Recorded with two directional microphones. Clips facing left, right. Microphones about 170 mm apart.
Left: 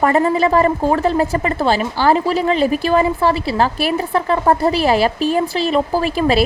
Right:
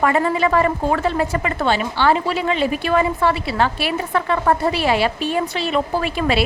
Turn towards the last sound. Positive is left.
turn(degrees=35)  # may be behind; listen again after turning